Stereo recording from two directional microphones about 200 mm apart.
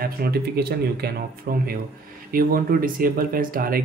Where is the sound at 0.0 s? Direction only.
50° right (ahead or behind).